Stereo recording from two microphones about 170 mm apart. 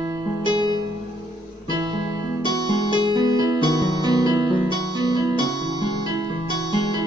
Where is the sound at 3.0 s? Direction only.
25° right (ahead or behind).